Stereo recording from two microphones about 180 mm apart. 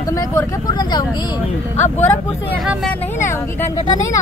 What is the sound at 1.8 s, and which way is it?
Speech, 10° left (ahead or behind).